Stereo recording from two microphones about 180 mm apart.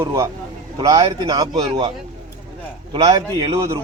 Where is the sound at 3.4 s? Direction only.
20° right (ahead or behind).